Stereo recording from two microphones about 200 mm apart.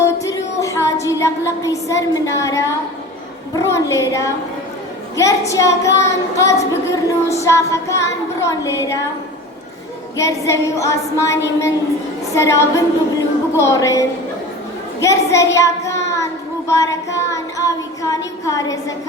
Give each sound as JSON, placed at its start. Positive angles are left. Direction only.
{"t": 0.0, "sound": "music", "side_deg": 15}
{"t": 1.0, "sound": "a woman's voice", "side_deg": 15}
{"t": 5.5, "sound": "a woman's voice", "side_deg": 15}
{"t": 10.2, "sound": "a woman's voice", "side_deg": 15}
{"t": 15.0, "sound": "child singing", "side_deg": 15}